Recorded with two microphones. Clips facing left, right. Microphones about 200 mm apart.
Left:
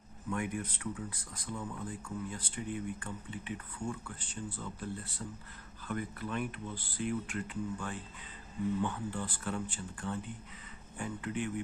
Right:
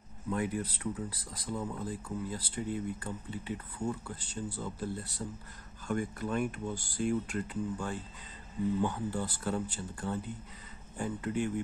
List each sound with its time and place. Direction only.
0.3 s speech: 35° right (ahead or behind)